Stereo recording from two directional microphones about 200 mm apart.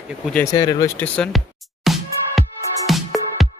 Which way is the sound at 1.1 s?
Centre (ahead or behind).